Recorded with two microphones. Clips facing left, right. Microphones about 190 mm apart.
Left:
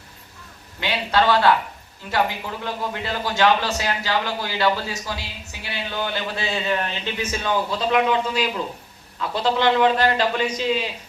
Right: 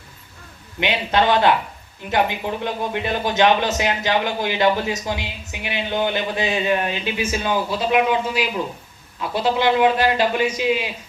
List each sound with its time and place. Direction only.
0.8 s a man's voice: 20° right (ahead or behind)